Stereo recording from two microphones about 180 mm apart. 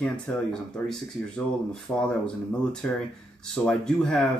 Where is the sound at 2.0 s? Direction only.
5° left (ahead or behind).